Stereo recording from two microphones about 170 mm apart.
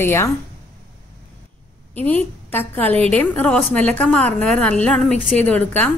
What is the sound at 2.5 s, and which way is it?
A woman's voice, 10° left (ahead or behind).